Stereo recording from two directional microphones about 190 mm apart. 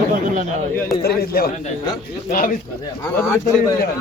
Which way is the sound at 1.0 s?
55° left (ahead or behind).